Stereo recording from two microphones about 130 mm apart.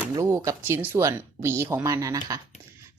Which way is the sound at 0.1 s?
25° right (ahead or behind).